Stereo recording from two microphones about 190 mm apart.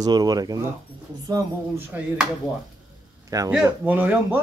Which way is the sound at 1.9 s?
10° right (ahead or behind).